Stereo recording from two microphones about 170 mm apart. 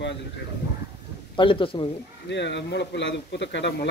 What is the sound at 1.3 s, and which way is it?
Speech, 30° left (ahead or behind).